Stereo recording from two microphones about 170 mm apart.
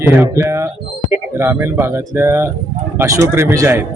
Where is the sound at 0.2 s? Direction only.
15° right (ahead or behind).